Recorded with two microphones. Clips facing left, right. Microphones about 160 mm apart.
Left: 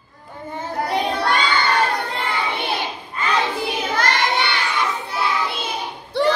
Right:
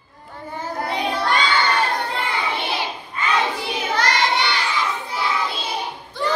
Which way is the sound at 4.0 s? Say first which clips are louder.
Right 1 dB; 55° left (ahead or behind).